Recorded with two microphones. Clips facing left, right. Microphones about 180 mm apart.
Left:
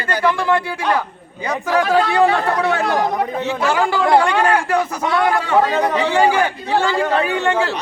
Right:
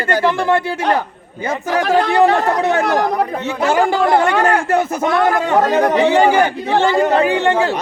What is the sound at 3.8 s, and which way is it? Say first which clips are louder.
Speech: right 1 dB; 45° right (ahead or behind).